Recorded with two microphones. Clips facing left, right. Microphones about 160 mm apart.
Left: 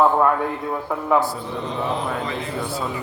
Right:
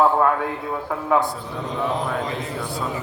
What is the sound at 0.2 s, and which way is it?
A man's voice, centre (ahead or behind).